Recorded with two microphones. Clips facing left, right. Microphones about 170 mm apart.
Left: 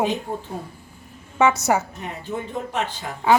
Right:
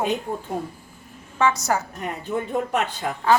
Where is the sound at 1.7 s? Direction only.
15° left (ahead or behind).